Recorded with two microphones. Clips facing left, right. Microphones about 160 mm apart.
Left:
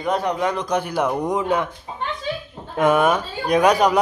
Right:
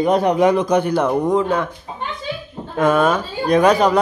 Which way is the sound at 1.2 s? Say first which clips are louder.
Right 3 dB; 15° left (ahead or behind).